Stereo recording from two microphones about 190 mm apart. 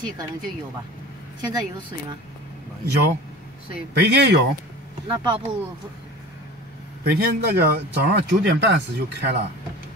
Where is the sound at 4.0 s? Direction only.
60° right (ahead or behind).